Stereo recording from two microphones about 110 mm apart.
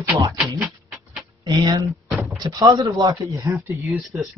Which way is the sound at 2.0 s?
Centre (ahead or behind).